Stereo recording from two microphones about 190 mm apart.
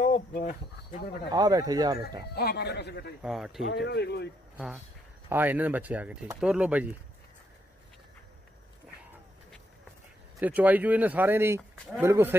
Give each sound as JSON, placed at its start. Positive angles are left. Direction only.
{"t": 0.0, "sound": "speech", "side_deg": 40}
{"t": 1.3, "sound": "speech", "side_deg": -20}
{"t": 2.3, "sound": "speech", "side_deg": 60}
{"t": 3.2, "sound": "speech", "side_deg": -5}
{"t": 3.7, "sound": "speech", "side_deg": 65}
{"t": 5.3, "sound": "speech", "side_deg": -10}
{"t": 10.4, "sound": "speech", "side_deg": -10}